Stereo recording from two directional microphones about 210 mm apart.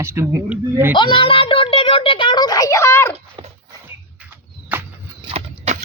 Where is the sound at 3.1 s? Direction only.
30° right (ahead or behind).